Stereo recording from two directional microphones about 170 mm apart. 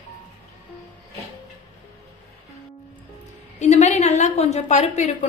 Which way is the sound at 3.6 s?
40° left (ahead or behind).